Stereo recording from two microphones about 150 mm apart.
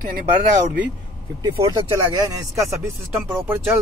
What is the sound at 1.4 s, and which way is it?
Speech, 25° right (ahead or behind).